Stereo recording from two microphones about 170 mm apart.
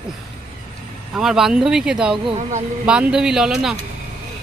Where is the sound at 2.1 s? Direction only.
35° right (ahead or behind).